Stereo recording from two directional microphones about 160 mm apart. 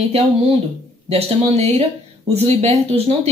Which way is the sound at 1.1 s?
40° right (ahead or behind).